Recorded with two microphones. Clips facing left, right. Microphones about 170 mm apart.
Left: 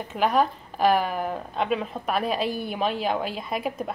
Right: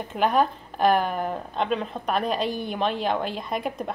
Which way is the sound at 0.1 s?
Centre (ahead or behind).